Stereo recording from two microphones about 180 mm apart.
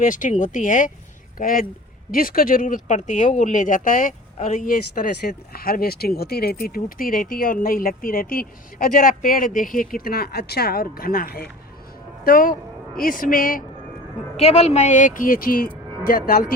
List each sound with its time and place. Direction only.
0.0 s speech: 45° left (ahead or behind)
14.3 s speech: 35° left (ahead or behind); by 16.5 s 50° left (ahead or behind)